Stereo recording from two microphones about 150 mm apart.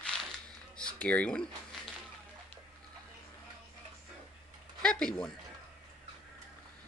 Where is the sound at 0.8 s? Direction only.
5° left (ahead or behind).